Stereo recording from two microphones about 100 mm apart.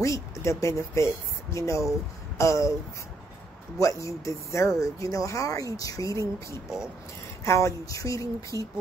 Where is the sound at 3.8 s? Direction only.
35° left (ahead or behind).